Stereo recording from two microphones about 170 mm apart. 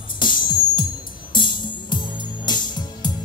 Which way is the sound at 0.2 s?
25° left (ahead or behind).